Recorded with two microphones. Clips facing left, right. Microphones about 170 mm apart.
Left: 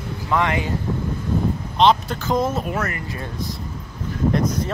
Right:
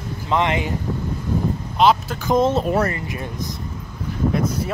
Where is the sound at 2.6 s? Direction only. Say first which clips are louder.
Right 5 dB; 35° right (ahead or behind).